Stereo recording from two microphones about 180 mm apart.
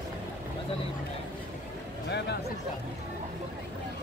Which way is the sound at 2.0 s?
70° left (ahead or behind).